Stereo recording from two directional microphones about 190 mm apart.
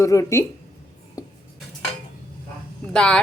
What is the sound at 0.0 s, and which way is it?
Speech, 15° left (ahead or behind).